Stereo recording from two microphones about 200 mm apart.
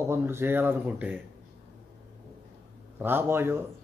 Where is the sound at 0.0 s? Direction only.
10° right (ahead or behind).